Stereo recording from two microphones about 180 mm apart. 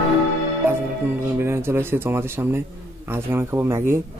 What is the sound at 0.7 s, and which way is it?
Speech, 15° right (ahead or behind).